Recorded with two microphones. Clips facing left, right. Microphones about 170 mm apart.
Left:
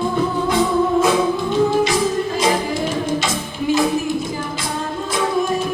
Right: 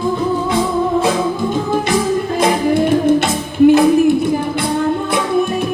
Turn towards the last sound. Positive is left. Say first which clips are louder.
# right 9 dB
turn(degrees=-60)  # may be behind; listen again after turning